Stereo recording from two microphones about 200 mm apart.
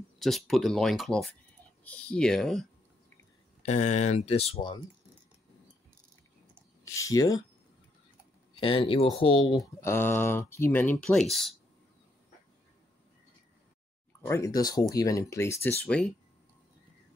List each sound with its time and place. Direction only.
0.5 s speech: centre (ahead or behind)
3.6 s speech: 35° left (ahead or behind)
6.8 s speech: 15° left (ahead or behind)
8.5 s speech: 25° left (ahead or behind)
9.8 s speech: 10° left (ahead or behind)
14.2 s speech: 15° left (ahead or behind)